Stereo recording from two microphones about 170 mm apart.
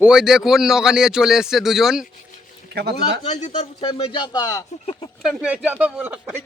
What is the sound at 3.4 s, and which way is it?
Speech, 40° left (ahead or behind).